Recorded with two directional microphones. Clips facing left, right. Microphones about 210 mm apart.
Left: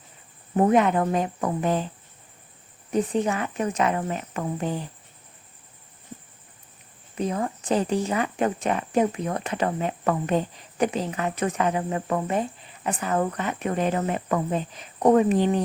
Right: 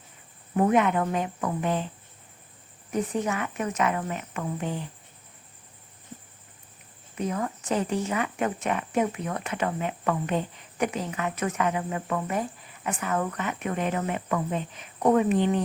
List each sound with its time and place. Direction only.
0.5 s speech: 35° left (ahead or behind)
2.9 s speech: 30° left (ahead or behind)
7.2 s speech: 30° left (ahead or behind)